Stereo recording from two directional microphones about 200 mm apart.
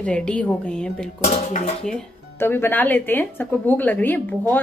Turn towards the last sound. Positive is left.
turn(degrees=10)  # may be behind; listen again after turning